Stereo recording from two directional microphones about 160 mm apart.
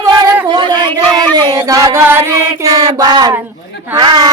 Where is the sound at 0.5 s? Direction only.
30° right (ahead or behind).